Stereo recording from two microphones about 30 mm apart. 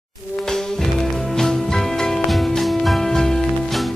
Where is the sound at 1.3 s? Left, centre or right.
Centre.